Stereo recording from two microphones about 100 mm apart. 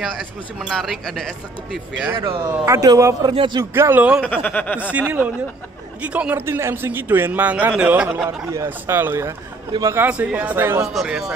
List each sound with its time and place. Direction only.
0.0 s speech: centre (ahead or behind)
2.6 s a man's voice: 30° right (ahead or behind)
3.3 s a man's voice: 50° right (ahead or behind)
3.7 s a man's voice: 20° right (ahead or behind)
4.2 s chuckle: 15° left (ahead or behind)
4.9 s speech: 15° right (ahead or behind)
6.4 s a man's voice: 25° right (ahead or behind)
8.6 s a man's voice: 20° right (ahead or behind)
9.7 s a man's voice: 35° right (ahead or behind)
10.0 s speech: 15° right (ahead or behind)
10.9 s speech: 5° right (ahead or behind)